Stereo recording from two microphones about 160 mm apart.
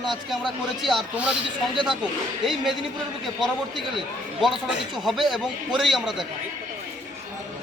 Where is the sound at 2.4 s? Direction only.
Centre (ahead or behind).